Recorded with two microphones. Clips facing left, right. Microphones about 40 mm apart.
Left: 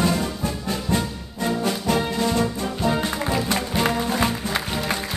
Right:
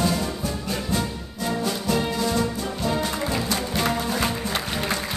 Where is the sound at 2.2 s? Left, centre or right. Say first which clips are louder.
Left 2 dB; left.